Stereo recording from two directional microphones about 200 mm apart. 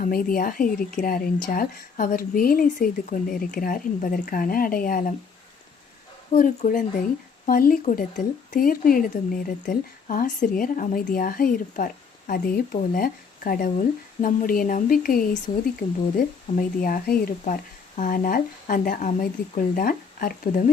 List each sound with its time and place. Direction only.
0.0 s speech: 45° left (ahead or behind)
6.3 s speech: 45° left (ahead or behind)